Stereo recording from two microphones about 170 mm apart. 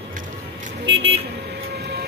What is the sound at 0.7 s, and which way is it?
Vehicle, 85° right.